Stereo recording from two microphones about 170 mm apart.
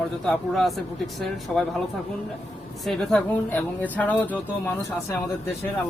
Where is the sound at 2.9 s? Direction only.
5° left (ahead or behind).